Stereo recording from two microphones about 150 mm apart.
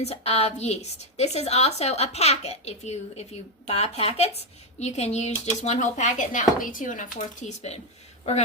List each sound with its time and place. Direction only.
0.0 s a woman's voice: 45° left (ahead or behind)